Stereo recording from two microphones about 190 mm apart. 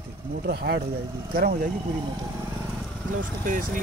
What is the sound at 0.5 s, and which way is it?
Speech, 55° right (ahead or behind).